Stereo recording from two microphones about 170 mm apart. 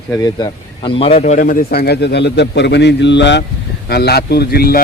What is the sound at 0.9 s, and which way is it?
Speech, 35° left (ahead or behind).